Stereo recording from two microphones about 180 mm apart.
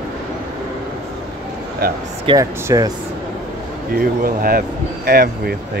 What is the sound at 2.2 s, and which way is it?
Speech, 20° right (ahead or behind).